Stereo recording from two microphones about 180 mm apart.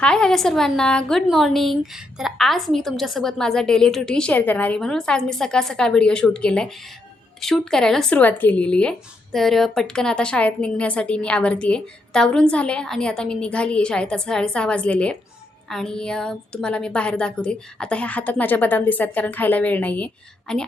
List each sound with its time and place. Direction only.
0.0 s a woman's voice: 5° left (ahead or behind)